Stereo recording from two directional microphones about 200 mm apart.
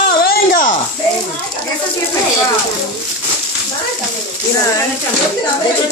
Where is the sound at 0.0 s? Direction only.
45° left (ahead or behind).